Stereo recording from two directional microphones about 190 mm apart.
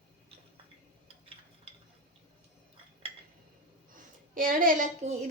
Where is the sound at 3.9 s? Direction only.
45° right (ahead or behind).